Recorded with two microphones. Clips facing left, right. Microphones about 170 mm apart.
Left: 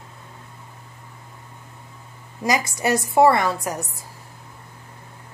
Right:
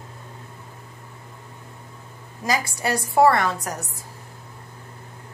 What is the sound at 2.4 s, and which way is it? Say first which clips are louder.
A woman's voice: left 3 dB; 15° left (ahead or behind).